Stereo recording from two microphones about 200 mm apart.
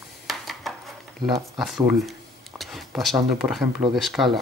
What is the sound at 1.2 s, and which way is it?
Speech, 20° right (ahead or behind).